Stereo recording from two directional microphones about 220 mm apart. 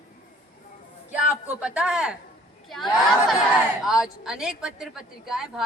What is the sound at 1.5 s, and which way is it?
Speech, 5° right (ahead or behind).